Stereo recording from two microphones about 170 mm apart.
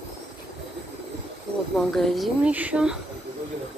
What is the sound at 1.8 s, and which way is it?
Speech, centre (ahead or behind).